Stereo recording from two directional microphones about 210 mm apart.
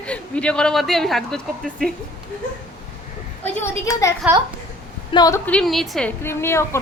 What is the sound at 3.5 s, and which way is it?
A woman's voice, 10° left (ahead or behind).